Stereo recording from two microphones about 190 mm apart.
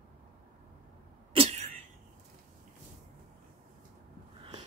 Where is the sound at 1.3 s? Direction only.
35° right (ahead or behind).